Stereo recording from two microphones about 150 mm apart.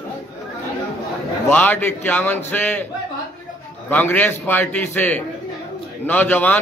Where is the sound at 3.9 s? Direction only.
10° left (ahead or behind).